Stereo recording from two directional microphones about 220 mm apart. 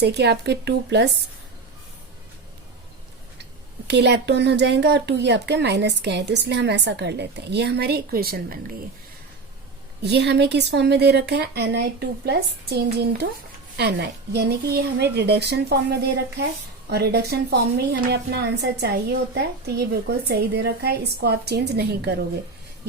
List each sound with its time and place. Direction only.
0.0 s speech: 50° right (ahead or behind)
3.8 s speech: 50° right (ahead or behind)
10.0 s speech: 50° right (ahead or behind)